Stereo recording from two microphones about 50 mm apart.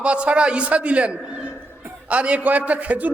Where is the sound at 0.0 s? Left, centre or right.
Right.